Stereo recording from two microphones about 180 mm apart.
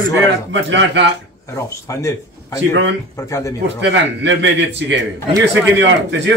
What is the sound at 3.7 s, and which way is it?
Speech, 80° right.